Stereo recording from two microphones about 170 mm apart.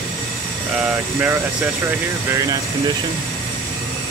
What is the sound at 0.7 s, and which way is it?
Speech, 10° right (ahead or behind).